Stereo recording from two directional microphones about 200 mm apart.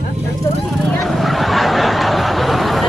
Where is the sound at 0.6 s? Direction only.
Centre (ahead or behind).